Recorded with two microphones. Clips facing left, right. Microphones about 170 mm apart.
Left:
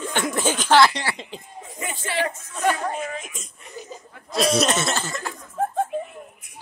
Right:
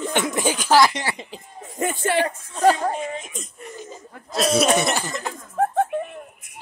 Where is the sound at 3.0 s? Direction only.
25° right (ahead or behind).